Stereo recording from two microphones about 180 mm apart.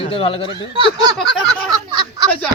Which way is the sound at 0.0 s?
30° left (ahead or behind).